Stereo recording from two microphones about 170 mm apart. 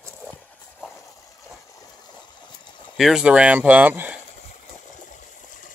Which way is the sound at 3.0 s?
5° right (ahead or behind).